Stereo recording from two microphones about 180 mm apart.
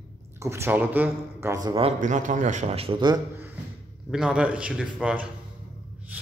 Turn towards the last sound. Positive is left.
turn(degrees=-5)  # may be behind; listen again after turning